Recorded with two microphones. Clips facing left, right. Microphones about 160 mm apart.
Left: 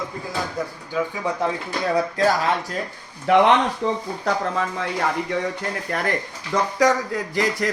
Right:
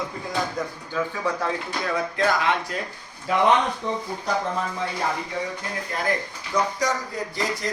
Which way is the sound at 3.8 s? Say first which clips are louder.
Left 5 dB; 90° left.